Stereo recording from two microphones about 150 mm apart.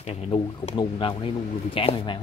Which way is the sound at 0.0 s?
45° left (ahead or behind).